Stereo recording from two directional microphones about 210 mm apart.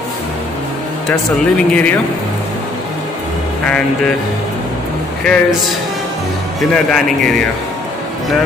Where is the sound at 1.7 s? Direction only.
5° left (ahead or behind).